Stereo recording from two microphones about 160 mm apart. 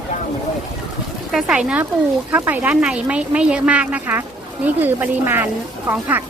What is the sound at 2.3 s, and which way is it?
Speech, 10° right (ahead or behind).